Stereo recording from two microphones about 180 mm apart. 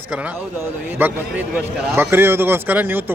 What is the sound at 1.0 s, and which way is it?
Speech, 10° right (ahead or behind).